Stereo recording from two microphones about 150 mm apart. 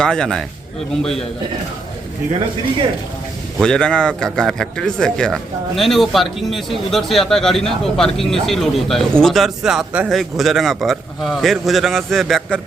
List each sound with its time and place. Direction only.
0.0 s speech: 5° left (ahead or behind)
3.6 s speech: 5° left (ahead or behind)